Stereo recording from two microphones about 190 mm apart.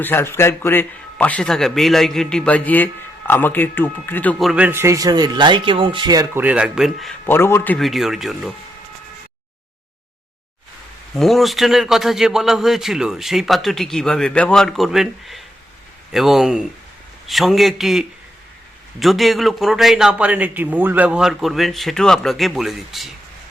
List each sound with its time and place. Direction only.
0.0 s a man's voice: 10° left (ahead or behind)
7.3 s a man's voice: 15° left (ahead or behind)
11.1 s a man's voice: centre (ahead or behind)